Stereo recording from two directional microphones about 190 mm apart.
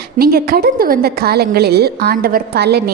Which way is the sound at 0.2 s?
50° right (ahead or behind).